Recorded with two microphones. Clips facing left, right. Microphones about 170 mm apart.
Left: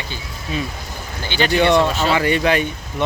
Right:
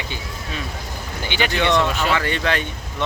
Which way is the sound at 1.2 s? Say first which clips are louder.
Left 3 dB; 15° right (ahead or behind).